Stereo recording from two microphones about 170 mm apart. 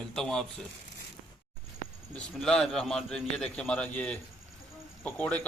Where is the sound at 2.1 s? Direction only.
5° left (ahead or behind).